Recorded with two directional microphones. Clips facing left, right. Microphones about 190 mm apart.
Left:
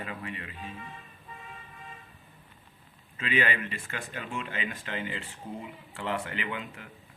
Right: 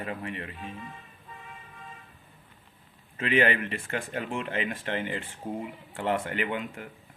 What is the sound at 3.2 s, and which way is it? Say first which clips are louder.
Speech: right 5 dB; 55° right (ahead or behind).